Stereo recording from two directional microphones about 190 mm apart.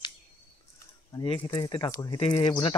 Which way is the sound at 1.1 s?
30° left (ahead or behind).